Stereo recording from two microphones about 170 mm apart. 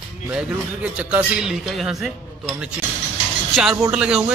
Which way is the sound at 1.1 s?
5° right (ahead or behind).